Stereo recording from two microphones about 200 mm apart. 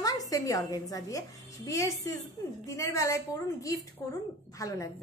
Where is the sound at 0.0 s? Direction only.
15° left (ahead or behind).